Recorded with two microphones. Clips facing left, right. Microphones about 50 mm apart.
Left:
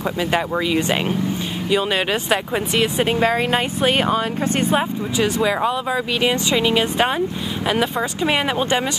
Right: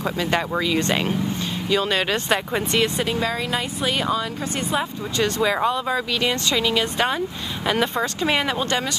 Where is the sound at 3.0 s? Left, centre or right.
Left.